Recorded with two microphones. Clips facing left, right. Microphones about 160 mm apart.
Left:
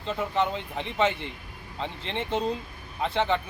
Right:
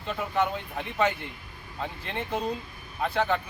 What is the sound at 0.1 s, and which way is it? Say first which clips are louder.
Speech: left 1 dB; 25° left (ahead or behind).